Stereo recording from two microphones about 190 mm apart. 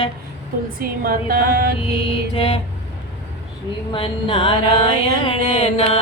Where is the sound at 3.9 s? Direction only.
25° left (ahead or behind).